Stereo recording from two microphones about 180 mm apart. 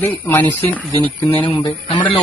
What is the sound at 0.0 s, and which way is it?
Speech, 15° left (ahead or behind).